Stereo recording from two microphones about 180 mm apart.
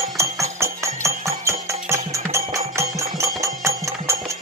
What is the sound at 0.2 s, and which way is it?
Music, 15° right (ahead or behind).